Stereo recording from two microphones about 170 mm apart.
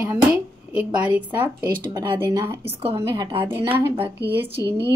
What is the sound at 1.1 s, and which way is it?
Speech, 10° right (ahead or behind).